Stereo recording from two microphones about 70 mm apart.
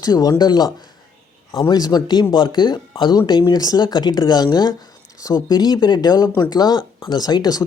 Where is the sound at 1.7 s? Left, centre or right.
Left.